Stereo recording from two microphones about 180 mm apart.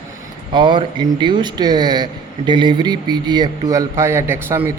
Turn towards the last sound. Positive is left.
turn(degrees=-15)  # may be behind; listen again after turning